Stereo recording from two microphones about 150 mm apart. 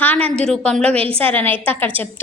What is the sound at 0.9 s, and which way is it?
Speech, 40° right (ahead or behind).